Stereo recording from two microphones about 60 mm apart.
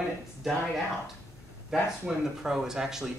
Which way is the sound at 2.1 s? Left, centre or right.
Centre.